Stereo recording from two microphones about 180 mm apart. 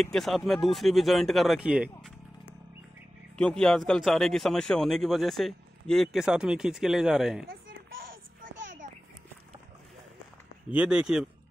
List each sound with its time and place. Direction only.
0.0 s speech: centre (ahead or behind)
3.3 s speech: 5° left (ahead or behind)
8.8 s a sound: 45° right (ahead or behind)
10.7 s speech: 5° right (ahead or behind)